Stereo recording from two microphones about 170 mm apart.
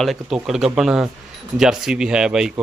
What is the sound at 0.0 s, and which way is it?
Speech, centre (ahead or behind).